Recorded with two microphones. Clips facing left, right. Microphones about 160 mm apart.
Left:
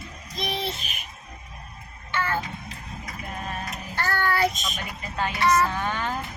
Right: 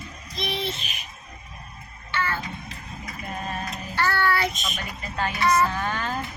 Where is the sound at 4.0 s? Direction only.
45° left (ahead or behind).